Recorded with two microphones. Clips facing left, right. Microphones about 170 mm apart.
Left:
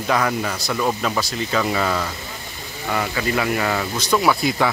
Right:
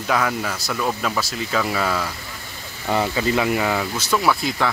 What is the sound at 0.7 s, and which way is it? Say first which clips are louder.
Speech: left 2 dB; 10° left (ahead or behind).